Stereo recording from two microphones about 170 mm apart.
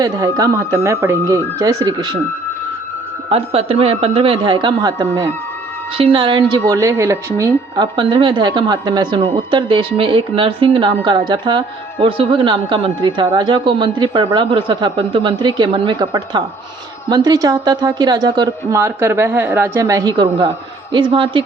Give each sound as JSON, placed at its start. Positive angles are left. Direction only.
{"t": 0.0, "sound": "speech", "side_deg": -20}
{"t": 3.2, "sound": "speech", "side_deg": -35}
{"t": 6.0, "sound": "speech", "side_deg": -30}